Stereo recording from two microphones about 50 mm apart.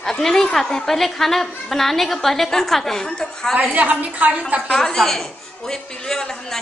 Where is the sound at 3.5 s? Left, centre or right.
Right.